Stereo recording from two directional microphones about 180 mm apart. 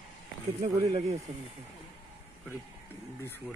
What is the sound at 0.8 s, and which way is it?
Speech, 30° right (ahead or behind).